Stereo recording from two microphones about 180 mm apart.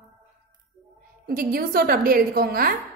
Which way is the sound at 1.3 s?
50° right (ahead or behind).